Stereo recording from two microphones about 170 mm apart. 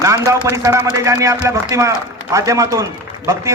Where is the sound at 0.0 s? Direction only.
20° right (ahead or behind).